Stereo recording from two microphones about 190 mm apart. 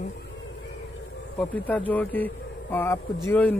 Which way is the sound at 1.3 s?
10° left (ahead or behind).